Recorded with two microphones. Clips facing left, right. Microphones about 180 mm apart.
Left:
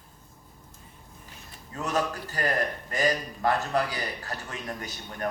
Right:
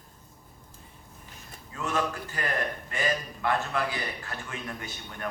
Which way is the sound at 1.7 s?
40° left (ahead or behind).